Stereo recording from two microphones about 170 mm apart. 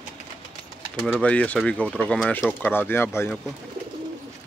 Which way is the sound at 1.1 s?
5° left (ahead or behind).